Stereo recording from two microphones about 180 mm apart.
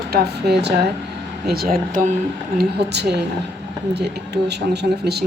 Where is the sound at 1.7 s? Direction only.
50° right (ahead or behind).